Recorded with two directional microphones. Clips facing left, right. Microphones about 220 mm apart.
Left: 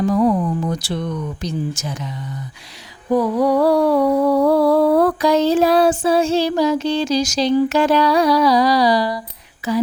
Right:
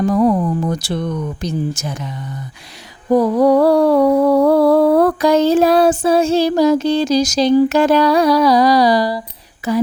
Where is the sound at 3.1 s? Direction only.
45° right (ahead or behind).